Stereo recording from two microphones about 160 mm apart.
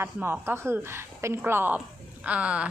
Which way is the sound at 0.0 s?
15° right (ahead or behind).